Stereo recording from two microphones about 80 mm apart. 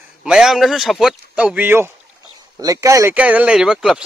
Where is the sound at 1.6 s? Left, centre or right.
Right.